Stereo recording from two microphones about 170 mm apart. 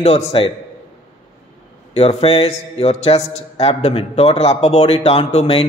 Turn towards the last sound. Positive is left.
turn(degrees=35)  # may be behind; listen again after turning